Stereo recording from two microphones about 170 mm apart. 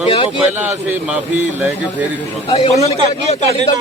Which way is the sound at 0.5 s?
10° right (ahead or behind).